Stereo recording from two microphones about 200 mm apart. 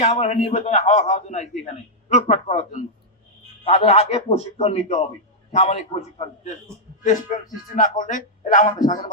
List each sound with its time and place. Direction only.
0.0 s speech: 35° left (ahead or behind)